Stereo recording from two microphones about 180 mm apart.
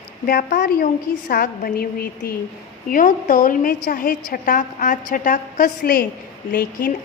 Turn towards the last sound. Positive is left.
turn(degrees=50)  # may be behind; listen again after turning